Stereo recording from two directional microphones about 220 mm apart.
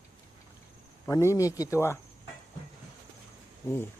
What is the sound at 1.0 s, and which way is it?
Speech, 10° left (ahead or behind).